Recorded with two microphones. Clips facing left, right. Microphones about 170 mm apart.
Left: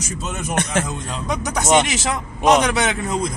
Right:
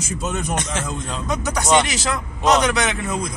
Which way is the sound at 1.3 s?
20° left (ahead or behind).